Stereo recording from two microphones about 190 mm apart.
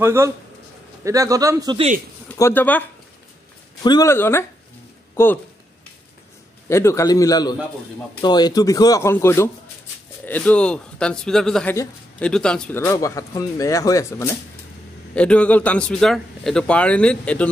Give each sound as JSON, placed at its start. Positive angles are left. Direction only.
{"t": 0.0, "sound": "a man's voice", "side_deg": -15}
{"t": 2.2, "sound": "speech", "side_deg": 10}
{"t": 3.8, "sound": "a man's voice", "side_deg": 20}
{"t": 6.7, "sound": "a man's voice", "side_deg": 15}
{"t": 15.1, "sound": "a man's voice", "side_deg": 5}